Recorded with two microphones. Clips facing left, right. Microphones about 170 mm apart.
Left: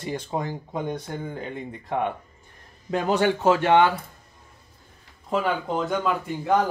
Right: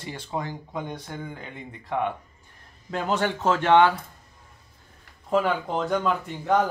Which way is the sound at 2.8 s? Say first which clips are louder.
Left 4 dB; 15° left (ahead or behind).